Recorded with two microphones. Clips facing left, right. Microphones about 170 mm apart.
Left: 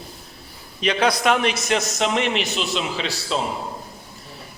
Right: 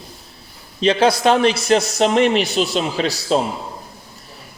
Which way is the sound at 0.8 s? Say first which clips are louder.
Right 5 dB; 30° right (ahead or behind).